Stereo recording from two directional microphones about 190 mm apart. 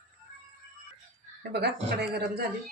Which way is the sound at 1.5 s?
60° right (ahead or behind).